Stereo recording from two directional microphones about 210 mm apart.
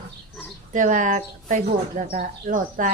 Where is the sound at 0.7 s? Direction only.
35° right (ahead or behind).